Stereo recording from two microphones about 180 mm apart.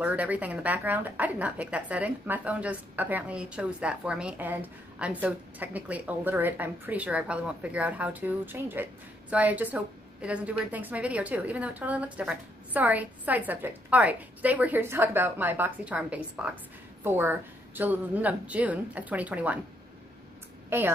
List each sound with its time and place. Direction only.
0.0 s speech: 10° right (ahead or behind)
20.7 s speech: 15° right (ahead or behind)